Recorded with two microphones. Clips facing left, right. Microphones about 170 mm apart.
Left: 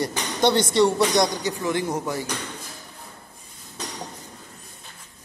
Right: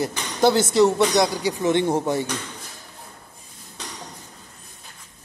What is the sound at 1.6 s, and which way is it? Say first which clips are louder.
Speech: right 7 dB; 25° right (ahead or behind).